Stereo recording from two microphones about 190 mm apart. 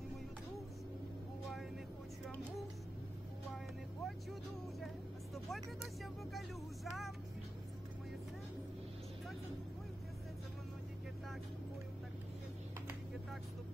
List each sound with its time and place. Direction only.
4.0 s vehicle: centre (ahead or behind)
6.3 s speech: centre (ahead or behind)